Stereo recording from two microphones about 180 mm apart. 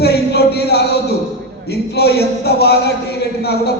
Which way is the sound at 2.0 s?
65° left (ahead or behind).